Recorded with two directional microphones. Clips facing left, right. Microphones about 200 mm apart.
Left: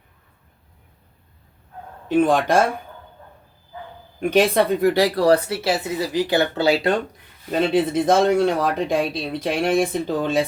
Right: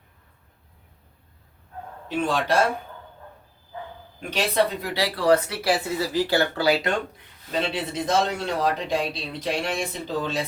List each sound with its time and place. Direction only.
2.0 s speech: 50° left (ahead or behind)
4.2 s speech: 50° left (ahead or behind); by 6.9 s 25° left (ahead or behind)
7.5 s speech: 50° left (ahead or behind)